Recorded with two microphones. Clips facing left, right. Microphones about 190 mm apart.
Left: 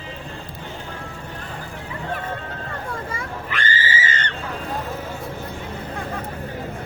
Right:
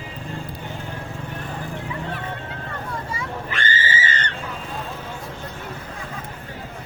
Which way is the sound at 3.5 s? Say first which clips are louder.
Left 1 dB; 25° right (ahead or behind).